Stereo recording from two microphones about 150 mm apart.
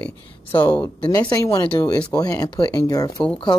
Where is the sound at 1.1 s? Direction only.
25° left (ahead or behind).